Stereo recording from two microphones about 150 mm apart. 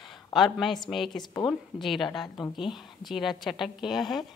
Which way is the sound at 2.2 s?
25° left (ahead or behind).